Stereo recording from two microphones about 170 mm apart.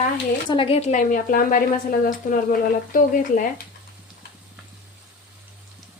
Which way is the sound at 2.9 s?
50° left (ahead or behind).